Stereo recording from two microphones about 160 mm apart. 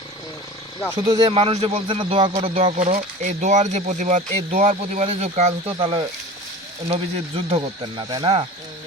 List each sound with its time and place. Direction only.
0.9 s speech: 20° right (ahead or behind)
1.3 s speech: 40° right (ahead or behind)
2.7 s speech: 60° right (ahead or behind); by 8.4 s 35° right (ahead or behind)